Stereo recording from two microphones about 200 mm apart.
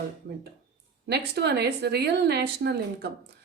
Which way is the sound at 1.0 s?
55° right (ahead or behind).